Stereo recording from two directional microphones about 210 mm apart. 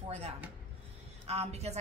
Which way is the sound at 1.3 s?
30° right (ahead or behind).